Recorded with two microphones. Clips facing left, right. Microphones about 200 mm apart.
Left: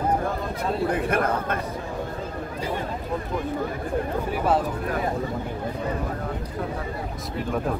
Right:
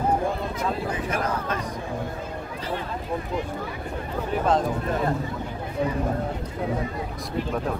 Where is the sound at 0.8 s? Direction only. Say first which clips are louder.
Left 4 dB; 55° left (ahead or behind).